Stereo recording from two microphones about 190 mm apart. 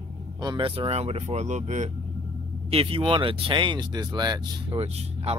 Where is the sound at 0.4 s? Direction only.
25° right (ahead or behind).